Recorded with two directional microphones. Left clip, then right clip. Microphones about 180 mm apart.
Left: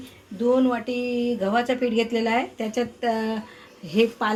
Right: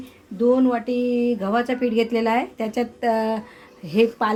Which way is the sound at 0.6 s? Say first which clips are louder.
Right 2 dB; 60° right (ahead or behind).